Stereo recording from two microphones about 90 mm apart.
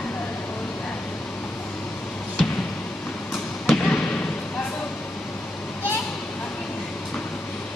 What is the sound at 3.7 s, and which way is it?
Basketball bounce, 10° left (ahead or behind).